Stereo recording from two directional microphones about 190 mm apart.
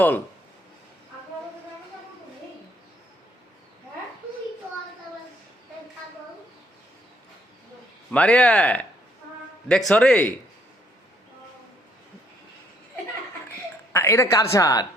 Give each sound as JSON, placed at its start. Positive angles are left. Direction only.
{"t": 8.1, "sound": "speech", "side_deg": 5}
{"t": 13.9, "sound": "a woman's voice", "side_deg": 15}